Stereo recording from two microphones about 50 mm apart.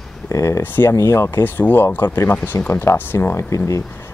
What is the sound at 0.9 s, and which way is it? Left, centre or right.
Speech, left.